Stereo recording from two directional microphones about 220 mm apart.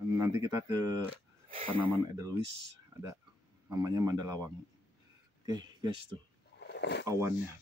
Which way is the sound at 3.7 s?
15° right (ahead or behind).